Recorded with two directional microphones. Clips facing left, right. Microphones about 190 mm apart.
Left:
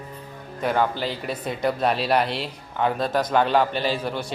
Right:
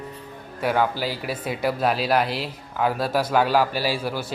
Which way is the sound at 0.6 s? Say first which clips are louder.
Even; 5° right (ahead or behind).